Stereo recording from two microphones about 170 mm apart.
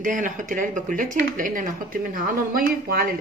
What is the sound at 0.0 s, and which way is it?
Speech, 50° right (ahead or behind).